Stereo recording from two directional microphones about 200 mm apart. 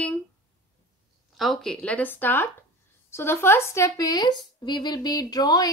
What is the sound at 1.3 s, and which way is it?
A woman's voice, centre (ahead or behind).